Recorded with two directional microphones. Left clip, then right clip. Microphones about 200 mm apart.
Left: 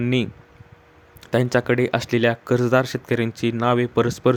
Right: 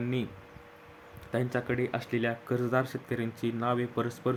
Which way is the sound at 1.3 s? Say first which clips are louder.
Left 12 dB; 45° left (ahead or behind).